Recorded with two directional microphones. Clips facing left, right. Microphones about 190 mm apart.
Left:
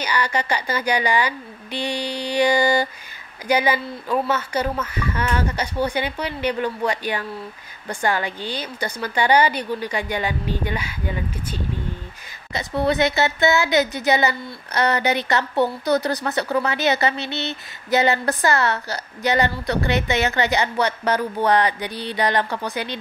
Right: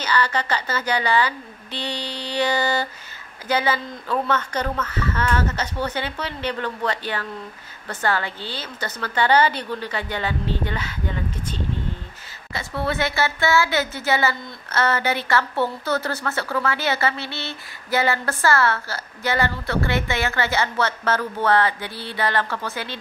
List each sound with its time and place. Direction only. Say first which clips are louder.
0.0 s speech: even; 15° left (ahead or behind)